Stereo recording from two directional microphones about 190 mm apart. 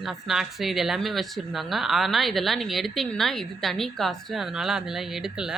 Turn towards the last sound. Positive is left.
turn(degrees=-5)  # may be behind; listen again after turning